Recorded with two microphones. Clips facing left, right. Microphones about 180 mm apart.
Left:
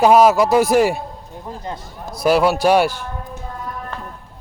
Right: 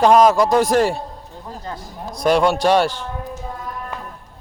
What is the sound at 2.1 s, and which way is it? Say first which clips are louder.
A man's voice: left 1 dB; 5° left (ahead or behind).